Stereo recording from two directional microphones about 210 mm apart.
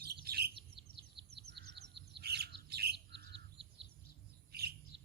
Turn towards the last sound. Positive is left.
turn(degrees=-50)  # may be behind; listen again after turning